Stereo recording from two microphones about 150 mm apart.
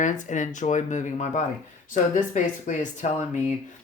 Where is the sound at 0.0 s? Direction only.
55° left (ahead or behind).